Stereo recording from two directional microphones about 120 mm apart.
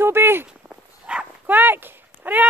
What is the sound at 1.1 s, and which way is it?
Dog, 10° right (ahead or behind).